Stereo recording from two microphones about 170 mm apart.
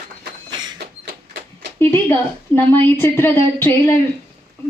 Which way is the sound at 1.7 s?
15° left (ahead or behind).